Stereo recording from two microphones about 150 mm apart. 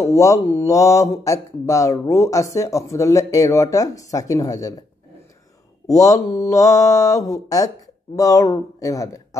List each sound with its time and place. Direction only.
0.0 s speech: 20° left (ahead or behind)
5.9 s speech: 20° left (ahead or behind)